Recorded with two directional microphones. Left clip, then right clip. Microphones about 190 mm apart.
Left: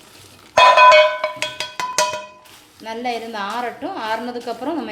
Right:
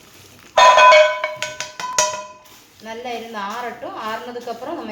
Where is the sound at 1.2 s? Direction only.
60° left (ahead or behind).